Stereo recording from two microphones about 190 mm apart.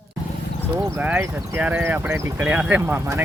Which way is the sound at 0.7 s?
15° right (ahead or behind).